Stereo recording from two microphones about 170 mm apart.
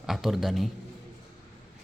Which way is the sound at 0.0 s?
Centre (ahead or behind).